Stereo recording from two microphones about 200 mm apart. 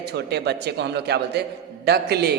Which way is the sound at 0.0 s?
55° right (ahead or behind).